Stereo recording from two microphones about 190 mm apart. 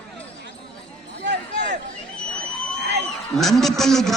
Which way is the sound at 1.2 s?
65° right (ahead or behind).